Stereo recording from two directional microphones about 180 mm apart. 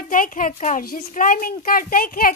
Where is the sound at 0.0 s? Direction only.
50° left (ahead or behind).